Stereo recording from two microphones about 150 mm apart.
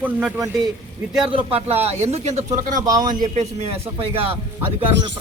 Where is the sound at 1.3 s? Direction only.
40° right (ahead or behind).